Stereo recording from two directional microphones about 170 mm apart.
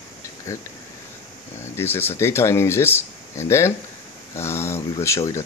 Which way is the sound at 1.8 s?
15° left (ahead or behind).